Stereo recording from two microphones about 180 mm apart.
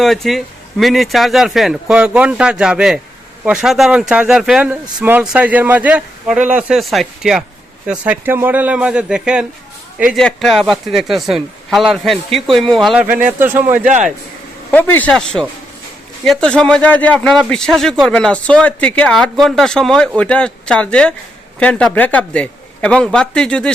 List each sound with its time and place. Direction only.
0.0 s a man's voice: centre (ahead or behind)
13.7 s speech: 45° right (ahead or behind)
14.7 s speech: 10° left (ahead or behind)